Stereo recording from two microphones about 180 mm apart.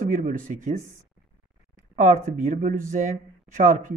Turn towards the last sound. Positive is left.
turn(degrees=-45)  # may be behind; listen again after turning